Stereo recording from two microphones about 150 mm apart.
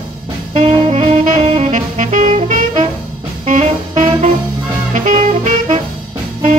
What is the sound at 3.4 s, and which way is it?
Music, 55° right (ahead or behind).